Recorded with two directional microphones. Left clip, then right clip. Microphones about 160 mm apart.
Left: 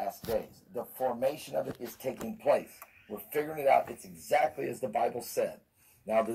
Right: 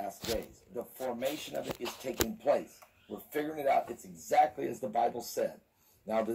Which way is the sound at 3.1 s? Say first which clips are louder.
Left 2 dB; 30° left (ahead or behind).